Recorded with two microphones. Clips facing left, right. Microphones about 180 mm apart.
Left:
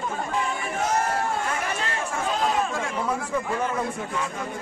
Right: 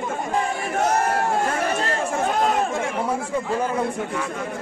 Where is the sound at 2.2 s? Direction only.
60° right (ahead or behind).